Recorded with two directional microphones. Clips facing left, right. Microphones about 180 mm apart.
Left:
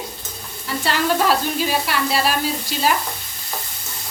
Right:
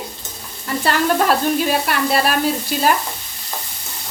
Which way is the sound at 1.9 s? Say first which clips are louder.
Right 3 dB; 55° right (ahead or behind).